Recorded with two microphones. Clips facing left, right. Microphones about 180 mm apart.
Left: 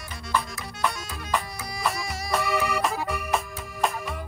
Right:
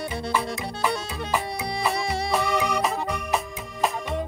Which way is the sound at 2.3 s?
Centre (ahead or behind).